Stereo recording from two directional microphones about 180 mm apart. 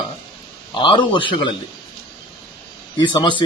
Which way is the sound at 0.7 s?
25° left (ahead or behind).